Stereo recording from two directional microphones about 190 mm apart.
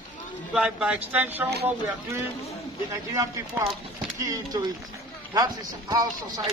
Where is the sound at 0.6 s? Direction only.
5° right (ahead or behind).